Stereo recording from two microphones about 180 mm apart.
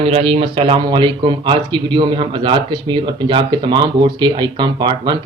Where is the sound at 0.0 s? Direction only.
30° right (ahead or behind).